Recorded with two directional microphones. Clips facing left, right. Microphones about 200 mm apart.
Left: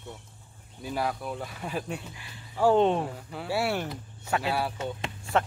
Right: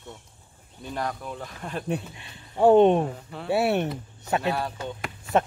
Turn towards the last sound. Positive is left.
turn(degrees=25)  # may be behind; listen again after turning